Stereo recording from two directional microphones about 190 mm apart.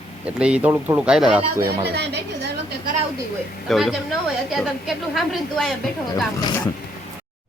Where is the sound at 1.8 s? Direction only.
60° right (ahead or behind).